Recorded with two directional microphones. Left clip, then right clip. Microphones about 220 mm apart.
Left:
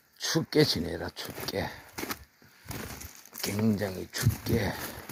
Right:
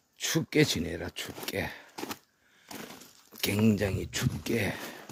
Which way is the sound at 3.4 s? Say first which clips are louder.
Right 3 dB; 30° right (ahead or behind).